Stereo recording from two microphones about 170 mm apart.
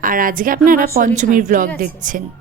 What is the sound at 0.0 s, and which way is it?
A woman's voice, 55° right (ahead or behind).